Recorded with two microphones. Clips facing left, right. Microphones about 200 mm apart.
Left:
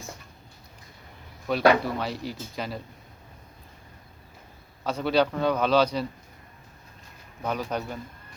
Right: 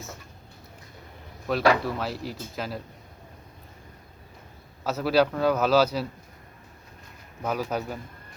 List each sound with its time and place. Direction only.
1.5 s speech: centre (ahead or behind)
4.8 s speech: 5° right (ahead or behind)
7.4 s speech: 5° right (ahead or behind)